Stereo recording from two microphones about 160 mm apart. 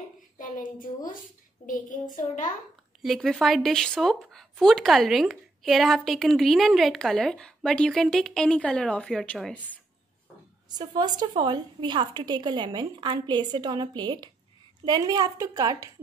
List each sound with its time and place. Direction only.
0.4 s a woman's voice: 55° left (ahead or behind)
3.0 s speech: centre (ahead or behind)
10.7 s a woman's voice: 25° right (ahead or behind)